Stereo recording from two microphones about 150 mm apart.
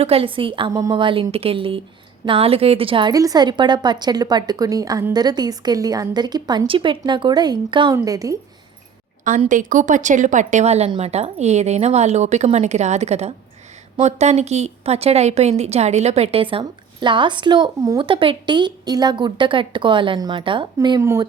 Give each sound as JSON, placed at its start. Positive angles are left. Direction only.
{"t": 0.0, "sound": "a woman's voice", "side_deg": -40}
{"t": 0.7, "sound": "a woman's voice", "side_deg": -20}
{"t": 0.9, "sound": "a woman's voice", "side_deg": -35}
{"t": 9.5, "sound": "a woman's voice", "side_deg": -60}